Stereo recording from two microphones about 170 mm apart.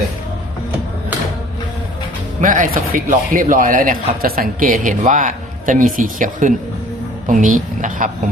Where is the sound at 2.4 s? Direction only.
50° right (ahead or behind).